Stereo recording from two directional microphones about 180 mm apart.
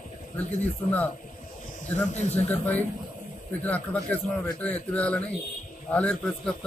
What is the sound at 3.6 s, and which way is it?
Speech, 10° left (ahead or behind).